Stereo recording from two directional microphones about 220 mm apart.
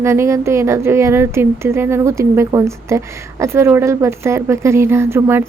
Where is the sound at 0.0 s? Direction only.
10° right (ahead or behind).